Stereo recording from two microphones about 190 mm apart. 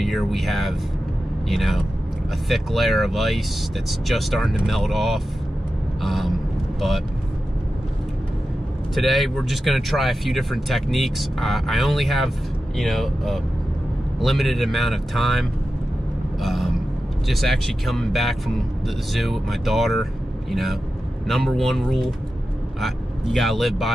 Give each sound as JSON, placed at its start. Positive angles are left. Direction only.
{"t": 0.0, "sound": "speech", "side_deg": 0}
{"t": 5.9, "sound": "vehicle", "side_deg": 0}
{"t": 8.9, "sound": "speech", "side_deg": 0}
{"t": 16.3, "sound": "burping", "side_deg": 0}
{"t": 17.3, "sound": "speech", "side_deg": 0}
{"t": 21.3, "sound": "speech", "side_deg": 0}